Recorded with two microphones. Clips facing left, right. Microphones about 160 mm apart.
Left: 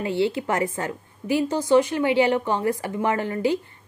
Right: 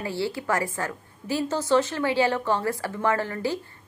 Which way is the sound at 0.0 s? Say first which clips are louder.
Left 5 dB; 20° left (ahead or behind).